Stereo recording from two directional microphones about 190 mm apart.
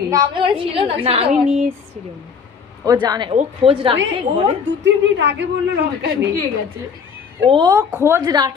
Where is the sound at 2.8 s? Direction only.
20° right (ahead or behind).